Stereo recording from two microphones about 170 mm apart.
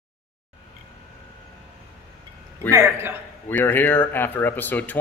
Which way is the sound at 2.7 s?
15° right (ahead or behind).